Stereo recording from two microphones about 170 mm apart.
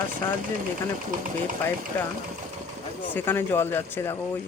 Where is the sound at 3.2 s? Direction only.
15° left (ahead or behind).